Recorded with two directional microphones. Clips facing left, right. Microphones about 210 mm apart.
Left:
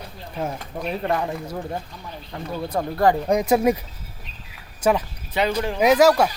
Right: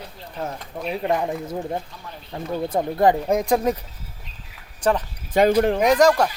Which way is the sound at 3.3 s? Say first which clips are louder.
Left 2 dB; 5° left (ahead or behind).